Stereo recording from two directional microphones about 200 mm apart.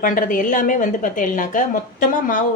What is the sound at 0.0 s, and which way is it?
A woman's voice, 45° left (ahead or behind).